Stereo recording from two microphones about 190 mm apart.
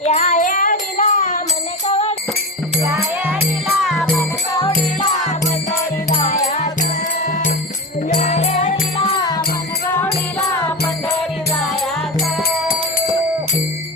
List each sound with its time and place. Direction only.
0.0 s jingle bell: 35° left (ahead or behind)
1.9 s music: 35° left (ahead or behind)
2.8 s music: 15° right (ahead or behind)
3.8 s music: centre (ahead or behind)
6.3 s music: 40° left (ahead or behind)
8.1 s music: 40° left (ahead or behind)